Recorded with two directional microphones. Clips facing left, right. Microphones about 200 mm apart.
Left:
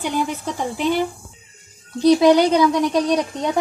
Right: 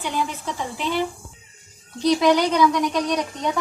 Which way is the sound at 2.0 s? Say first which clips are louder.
Left 5 dB; 30° left (ahead or behind).